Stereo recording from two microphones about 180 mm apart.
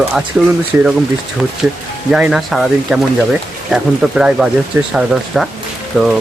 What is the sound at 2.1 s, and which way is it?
Speech, 5° right (ahead or behind).